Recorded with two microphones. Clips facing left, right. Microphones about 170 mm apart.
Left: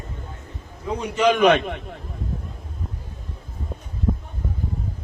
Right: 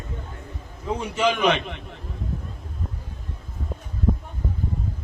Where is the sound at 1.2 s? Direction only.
55° left (ahead or behind).